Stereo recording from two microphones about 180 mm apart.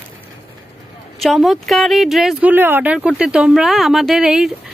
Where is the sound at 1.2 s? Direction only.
Centre (ahead or behind).